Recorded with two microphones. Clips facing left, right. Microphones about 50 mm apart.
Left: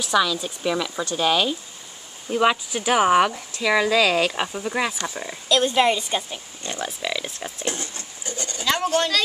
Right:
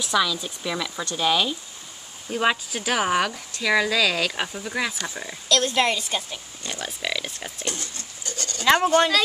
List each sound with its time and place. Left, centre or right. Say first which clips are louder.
0.0 s speech: left 2 dB; centre
4.3 s speech: left 3 dB; centre
5.5 s speech: left 3 dB; centre
6.6 s speech: left 3 dB; left
7.0 s speech: left 1 dB; centre
7.6 s goat: left 3 dB; left
8.6 s speech: right 5 dB; right
8.9 s speech: right 3 dB; centre